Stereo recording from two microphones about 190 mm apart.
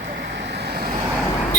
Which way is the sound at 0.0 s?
70° right (ahead or behind).